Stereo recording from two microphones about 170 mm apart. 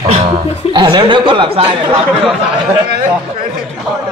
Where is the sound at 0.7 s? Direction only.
30° right (ahead or behind).